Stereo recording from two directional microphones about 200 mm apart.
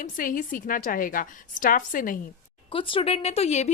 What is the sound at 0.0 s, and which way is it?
A woman's voice, 45° left (ahead or behind).